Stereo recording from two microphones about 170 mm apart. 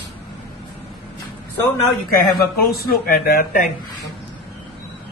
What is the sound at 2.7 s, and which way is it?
Speech, 65° left (ahead or behind).